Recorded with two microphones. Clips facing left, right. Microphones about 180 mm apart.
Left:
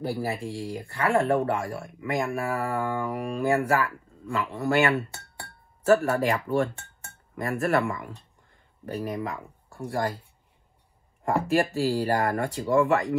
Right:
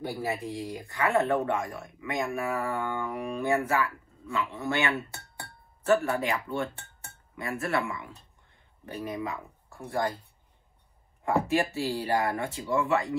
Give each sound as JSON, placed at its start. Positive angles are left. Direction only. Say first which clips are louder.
{"t": 0.2, "sound": "speech", "louder": "left 2 dB", "side_deg": 30}
{"t": 11.2, "sound": "speech", "louder": "left 2 dB", "side_deg": 40}